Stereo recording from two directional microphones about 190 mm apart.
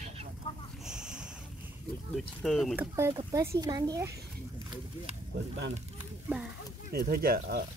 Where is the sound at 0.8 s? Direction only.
5° right (ahead or behind).